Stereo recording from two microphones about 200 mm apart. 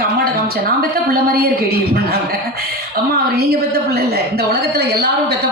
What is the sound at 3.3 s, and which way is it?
A woman's voice, 55° right (ahead or behind).